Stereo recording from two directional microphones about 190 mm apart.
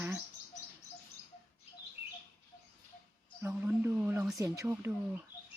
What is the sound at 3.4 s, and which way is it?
Speech, 10° right (ahead or behind).